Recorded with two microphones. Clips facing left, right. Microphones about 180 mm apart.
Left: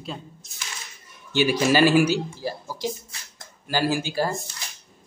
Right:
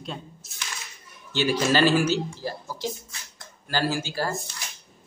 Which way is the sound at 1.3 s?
15° left (ahead or behind).